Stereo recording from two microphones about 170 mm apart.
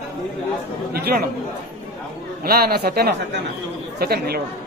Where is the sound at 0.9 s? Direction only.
65° right (ahead or behind).